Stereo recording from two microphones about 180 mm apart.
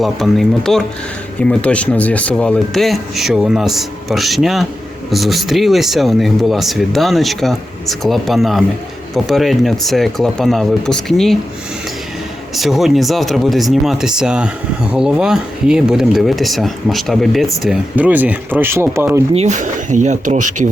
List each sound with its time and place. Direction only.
0.0 s speech: centre (ahead or behind)
12.5 s speech: centre (ahead or behind)
19.3 s speech: 40° right (ahead or behind)